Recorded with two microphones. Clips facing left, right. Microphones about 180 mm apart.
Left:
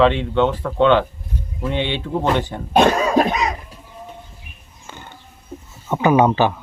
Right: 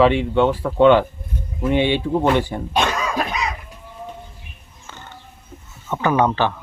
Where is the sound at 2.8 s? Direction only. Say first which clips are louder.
Left 10 dB; 35° left (ahead or behind).